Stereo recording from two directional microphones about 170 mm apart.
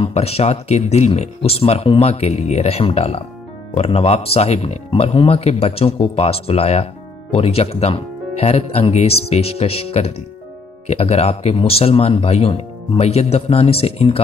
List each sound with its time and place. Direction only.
0.0 s speech: 35° left (ahead or behind)